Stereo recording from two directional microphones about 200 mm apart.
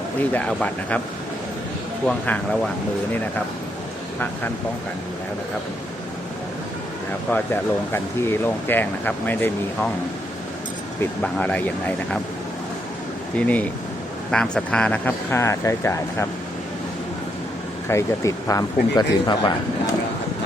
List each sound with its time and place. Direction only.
0.2 s speech: 5° left (ahead or behind)
2.0 s speech: 5° left (ahead or behind)
7.3 s speech: 10° left (ahead or behind)
11.0 s speech: 5° left (ahead or behind)
13.3 s speech: 5° left (ahead or behind)
17.8 s speech: 15° left (ahead or behind)